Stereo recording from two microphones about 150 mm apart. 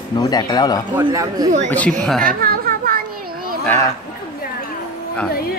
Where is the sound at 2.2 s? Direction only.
70° right (ahead or behind).